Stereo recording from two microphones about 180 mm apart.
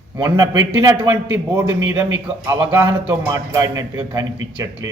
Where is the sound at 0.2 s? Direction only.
20° right (ahead or behind).